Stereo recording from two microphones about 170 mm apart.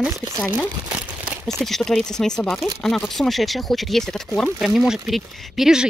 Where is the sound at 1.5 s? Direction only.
Centre (ahead or behind).